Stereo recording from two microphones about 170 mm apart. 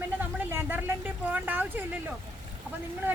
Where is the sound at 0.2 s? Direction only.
10° right (ahead or behind).